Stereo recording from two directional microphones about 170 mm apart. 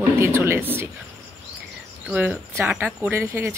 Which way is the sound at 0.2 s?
15° right (ahead or behind).